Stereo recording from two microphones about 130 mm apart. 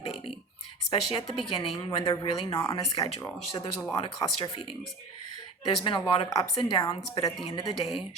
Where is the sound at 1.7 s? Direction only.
35° left (ahead or behind).